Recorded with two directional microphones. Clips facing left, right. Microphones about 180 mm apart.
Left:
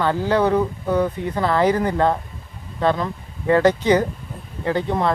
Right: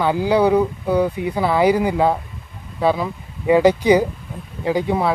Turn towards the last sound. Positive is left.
turn(degrees=-10)  # may be behind; listen again after turning